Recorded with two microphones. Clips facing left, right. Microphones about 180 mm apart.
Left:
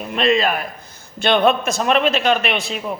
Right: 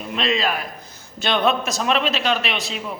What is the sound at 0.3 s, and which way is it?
Speech, 55° left (ahead or behind).